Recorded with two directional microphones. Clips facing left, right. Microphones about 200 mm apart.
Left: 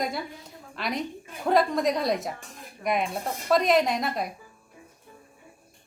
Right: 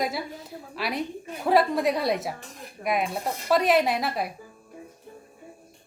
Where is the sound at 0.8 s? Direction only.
5° right (ahead or behind).